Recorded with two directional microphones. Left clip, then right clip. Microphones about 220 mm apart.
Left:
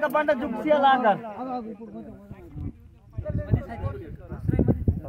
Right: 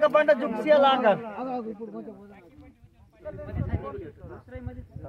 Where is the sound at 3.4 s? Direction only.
50° left (ahead or behind).